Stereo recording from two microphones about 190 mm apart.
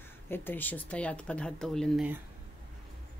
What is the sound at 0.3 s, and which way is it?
Speech, 10° left (ahead or behind).